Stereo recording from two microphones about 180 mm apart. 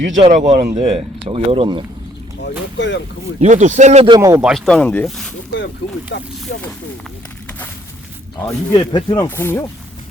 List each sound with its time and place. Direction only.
0.2 s speech: 35° right (ahead or behind)
2.4 s speech: 85° left
3.4 s speech: 40° right (ahead or behind); by 4.4 s 20° right (ahead or behind)
4.4 s speech: centre (ahead or behind)
6.1 s speech: 75° left (ahead or behind)
8.4 s speech: 20° left (ahead or behind)
9.2 s speech: 15° left (ahead or behind)